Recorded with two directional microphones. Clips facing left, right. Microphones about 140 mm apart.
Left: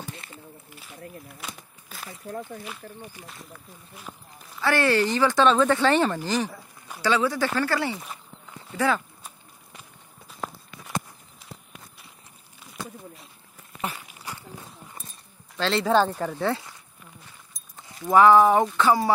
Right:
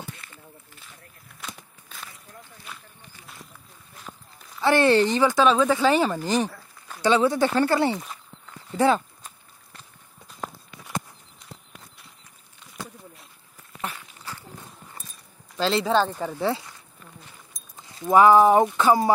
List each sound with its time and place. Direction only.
1.9 s a sound: 5° left (ahead or behind)
4.6 s speech: 20° right (ahead or behind); by 6.1 s 5° right (ahead or behind)
6.2 s speech: 15° right (ahead or behind)
8.0 s walk: 10° left (ahead or behind)
8.7 s speech: 25° right (ahead or behind)
9.2 s a sound: 10° left (ahead or behind)
13.7 s a sound: 10° left (ahead or behind)
15.5 s speech: 5° right (ahead or behind)
15.9 s speech: 10° left (ahead or behind)
16.2 s speech: 5° right (ahead or behind)
17.9 s speech: 20° right (ahead or behind)